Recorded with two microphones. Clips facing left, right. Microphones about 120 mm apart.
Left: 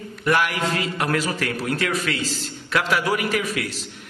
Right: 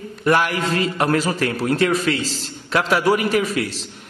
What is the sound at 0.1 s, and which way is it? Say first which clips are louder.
A man's voice: right 3 dB; 30° right (ahead or behind).